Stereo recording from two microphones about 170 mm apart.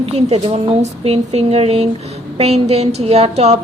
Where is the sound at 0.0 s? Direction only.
35° right (ahead or behind).